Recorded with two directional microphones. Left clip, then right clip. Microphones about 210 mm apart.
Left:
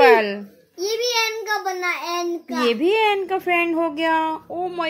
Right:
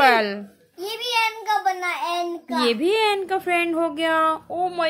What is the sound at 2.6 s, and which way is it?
A woman's voice, centre (ahead or behind).